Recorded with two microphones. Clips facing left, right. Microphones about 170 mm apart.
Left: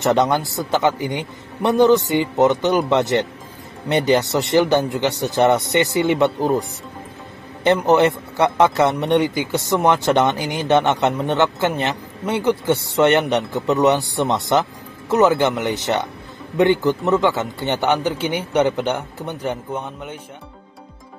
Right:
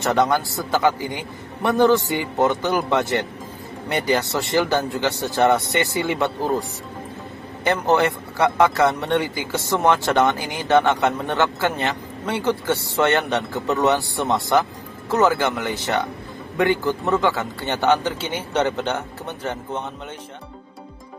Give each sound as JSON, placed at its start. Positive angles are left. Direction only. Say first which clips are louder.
{"t": 0.0, "sound": "a man's voice", "louder": "left 2 dB", "side_deg": 20}
{"t": 7.6, "sound": "a man's voice", "louder": "left 4 dB", "side_deg": 20}